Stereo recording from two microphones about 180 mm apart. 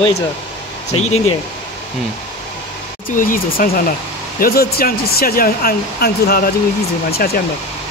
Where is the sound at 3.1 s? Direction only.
50° left (ahead or behind).